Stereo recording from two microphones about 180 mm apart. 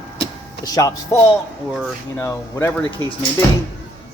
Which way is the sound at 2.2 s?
15° left (ahead or behind).